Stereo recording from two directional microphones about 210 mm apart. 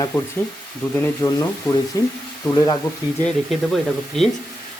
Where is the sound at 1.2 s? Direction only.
20° left (ahead or behind).